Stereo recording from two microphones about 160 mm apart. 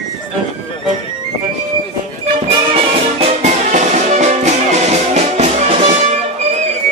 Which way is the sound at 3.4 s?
45° right (ahead or behind).